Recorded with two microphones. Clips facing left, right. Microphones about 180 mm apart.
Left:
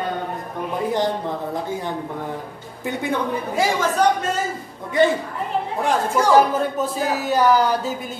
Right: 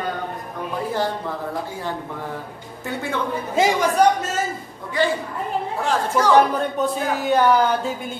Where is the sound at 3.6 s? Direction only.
20° right (ahead or behind).